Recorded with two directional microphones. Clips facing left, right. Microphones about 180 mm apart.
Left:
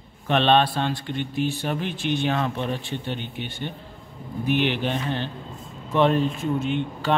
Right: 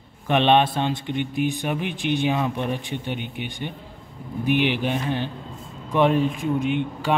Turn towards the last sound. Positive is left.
turn(degrees=-15)  # may be behind; listen again after turning